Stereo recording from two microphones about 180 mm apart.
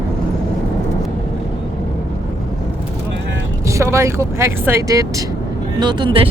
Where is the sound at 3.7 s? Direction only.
15° right (ahead or behind).